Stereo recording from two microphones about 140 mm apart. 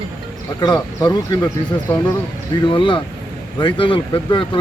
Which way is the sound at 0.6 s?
30° left (ahead or behind).